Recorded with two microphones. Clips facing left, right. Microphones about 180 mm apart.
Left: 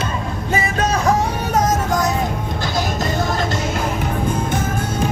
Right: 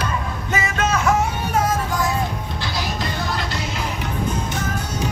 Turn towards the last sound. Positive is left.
turn(degrees=50)  # may be behind; listen again after turning